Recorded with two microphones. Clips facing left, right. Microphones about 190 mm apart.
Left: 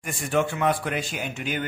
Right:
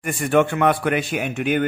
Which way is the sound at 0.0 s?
65° right (ahead or behind).